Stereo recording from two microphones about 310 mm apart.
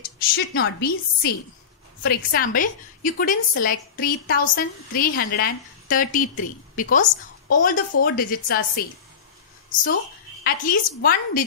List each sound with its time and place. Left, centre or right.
0.3 s a woman's voice: left
10.4 s a woman's voice: left